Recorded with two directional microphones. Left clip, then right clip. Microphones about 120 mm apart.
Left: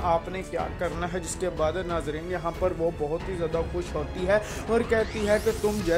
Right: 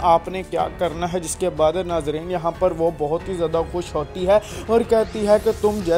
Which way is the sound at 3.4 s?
35° right (ahead or behind).